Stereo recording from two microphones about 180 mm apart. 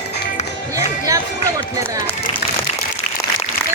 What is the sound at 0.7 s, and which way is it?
Music, 20° right (ahead or behind).